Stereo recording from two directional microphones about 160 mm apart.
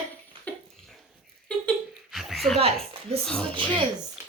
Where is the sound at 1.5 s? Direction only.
Centre (ahead or behind).